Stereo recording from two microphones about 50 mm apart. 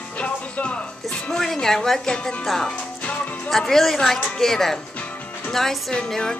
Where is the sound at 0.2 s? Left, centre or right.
Left.